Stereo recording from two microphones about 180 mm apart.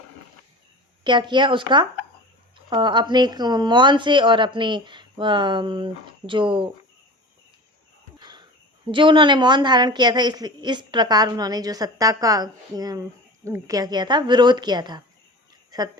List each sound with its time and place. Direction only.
1.0 s a woman's voice: 25° right (ahead or behind)
8.2 s cricket: 25° right (ahead or behind)
8.9 s a woman's voice: 25° right (ahead or behind)